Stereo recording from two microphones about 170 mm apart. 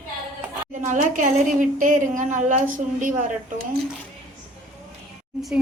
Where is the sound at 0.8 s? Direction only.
50° right (ahead or behind).